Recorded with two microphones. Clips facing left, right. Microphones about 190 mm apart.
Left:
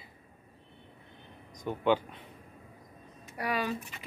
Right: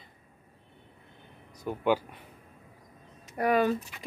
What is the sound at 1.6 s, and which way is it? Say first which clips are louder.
Speech: even; 10° right (ahead or behind).